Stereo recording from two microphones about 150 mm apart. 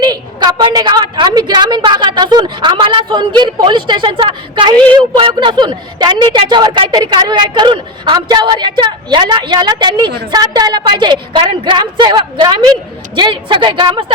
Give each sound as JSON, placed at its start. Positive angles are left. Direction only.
{"t": 0.0, "sound": "a woman's voice", "side_deg": -30}